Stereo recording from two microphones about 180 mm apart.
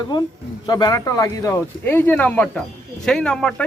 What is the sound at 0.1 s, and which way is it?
Speech, 25° left (ahead or behind).